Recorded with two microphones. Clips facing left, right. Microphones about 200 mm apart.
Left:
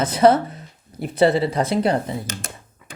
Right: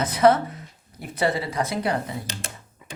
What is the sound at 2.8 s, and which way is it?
Thunk, 15° right (ahead or behind).